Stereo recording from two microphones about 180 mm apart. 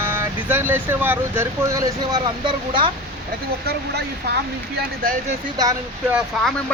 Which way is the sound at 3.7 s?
65° right (ahead or behind).